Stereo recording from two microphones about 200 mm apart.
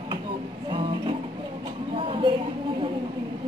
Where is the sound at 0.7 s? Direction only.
25° right (ahead or behind).